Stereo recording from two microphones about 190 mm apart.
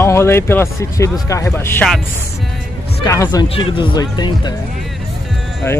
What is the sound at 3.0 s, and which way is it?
Speech, 15° left (ahead or behind).